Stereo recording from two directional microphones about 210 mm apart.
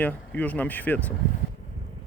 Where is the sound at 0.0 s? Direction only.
5° left (ahead or behind).